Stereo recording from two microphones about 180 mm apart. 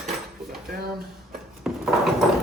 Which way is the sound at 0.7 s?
55° right (ahead or behind).